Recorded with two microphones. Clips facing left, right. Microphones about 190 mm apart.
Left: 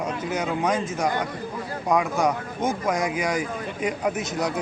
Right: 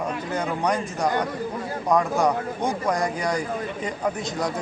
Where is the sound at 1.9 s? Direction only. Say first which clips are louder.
Right 1 dB; centre (ahead or behind).